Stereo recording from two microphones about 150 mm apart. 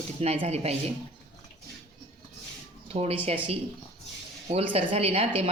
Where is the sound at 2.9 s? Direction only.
45° right (ahead or behind).